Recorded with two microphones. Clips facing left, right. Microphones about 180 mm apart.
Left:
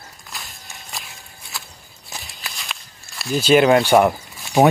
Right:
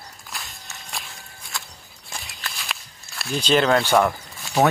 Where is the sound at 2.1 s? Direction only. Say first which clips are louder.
Even; 5° left (ahead or behind).